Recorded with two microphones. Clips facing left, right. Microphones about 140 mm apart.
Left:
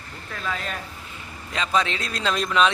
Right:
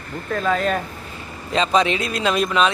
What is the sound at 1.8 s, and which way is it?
Speech, 10° right (ahead or behind).